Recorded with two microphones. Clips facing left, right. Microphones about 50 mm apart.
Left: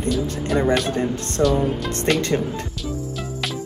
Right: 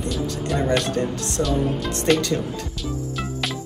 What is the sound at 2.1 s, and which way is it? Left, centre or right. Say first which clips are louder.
Speech: right 1 dB; centre.